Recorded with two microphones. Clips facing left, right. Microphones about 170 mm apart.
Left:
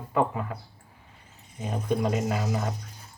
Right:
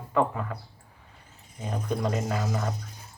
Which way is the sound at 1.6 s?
15° left (ahead or behind).